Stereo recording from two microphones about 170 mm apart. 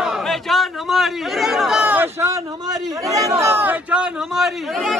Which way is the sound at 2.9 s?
20° right (ahead or behind).